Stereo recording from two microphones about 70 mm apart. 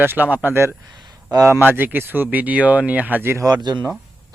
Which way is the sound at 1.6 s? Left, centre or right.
Right.